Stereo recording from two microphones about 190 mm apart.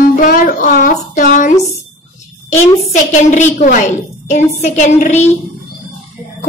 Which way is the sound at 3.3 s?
40° left (ahead or behind).